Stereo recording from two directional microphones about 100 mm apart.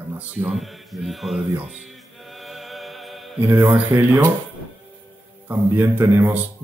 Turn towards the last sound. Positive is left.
turn(degrees=-20)  # may be behind; listen again after turning